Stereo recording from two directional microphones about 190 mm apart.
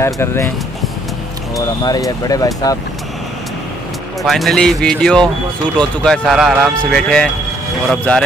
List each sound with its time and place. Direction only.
0.0 s speech: 15° left (ahead or behind)
1.9 s speech: 20° left (ahead or behind)
4.2 s speech: centre (ahead or behind)